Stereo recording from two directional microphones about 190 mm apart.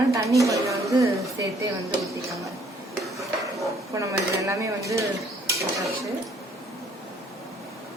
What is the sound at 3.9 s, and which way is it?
A woman's voice, 15° right (ahead or behind).